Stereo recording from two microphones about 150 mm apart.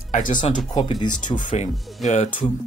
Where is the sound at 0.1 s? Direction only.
60° left (ahead or behind).